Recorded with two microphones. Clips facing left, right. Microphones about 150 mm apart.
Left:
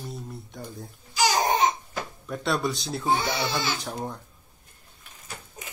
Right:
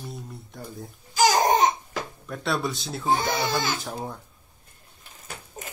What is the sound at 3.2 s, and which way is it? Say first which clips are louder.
Speech: right 2 dB; 45° right (ahead or behind).